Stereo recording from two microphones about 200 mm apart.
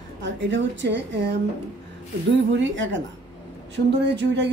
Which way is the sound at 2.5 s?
70° right (ahead or behind).